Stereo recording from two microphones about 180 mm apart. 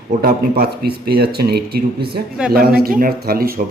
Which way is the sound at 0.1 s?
55° right (ahead or behind).